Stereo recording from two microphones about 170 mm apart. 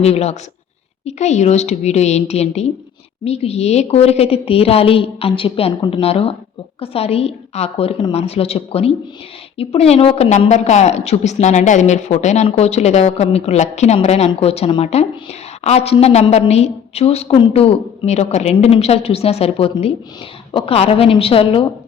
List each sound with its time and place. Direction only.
0.0 s speech: 40° left (ahead or behind)